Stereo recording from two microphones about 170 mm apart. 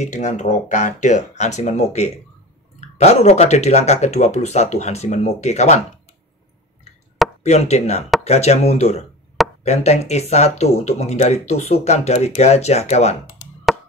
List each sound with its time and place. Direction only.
0.0 s speech: 45° left (ahead or behind)
7.4 s speech: 40° left (ahead or behind)